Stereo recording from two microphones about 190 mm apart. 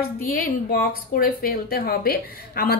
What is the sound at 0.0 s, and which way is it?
Speech, 55° left (ahead or behind).